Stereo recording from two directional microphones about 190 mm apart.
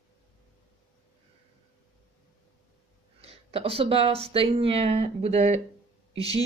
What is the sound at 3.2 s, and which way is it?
Speech, 30° right (ahead or behind).